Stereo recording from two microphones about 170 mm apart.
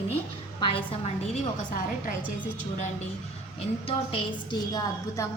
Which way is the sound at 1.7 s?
55° left (ahead or behind).